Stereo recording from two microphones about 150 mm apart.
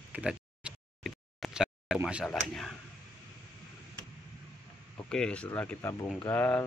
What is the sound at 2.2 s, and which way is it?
Speech, 5° left (ahead or behind).